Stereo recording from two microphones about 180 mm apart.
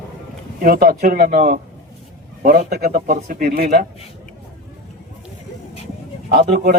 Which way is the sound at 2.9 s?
45° right (ahead or behind).